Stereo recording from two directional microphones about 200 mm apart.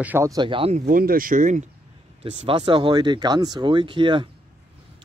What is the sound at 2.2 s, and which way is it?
Speech, 25° right (ahead or behind).